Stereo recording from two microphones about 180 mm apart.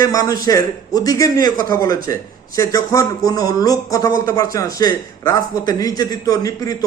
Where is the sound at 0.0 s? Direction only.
20° left (ahead or behind).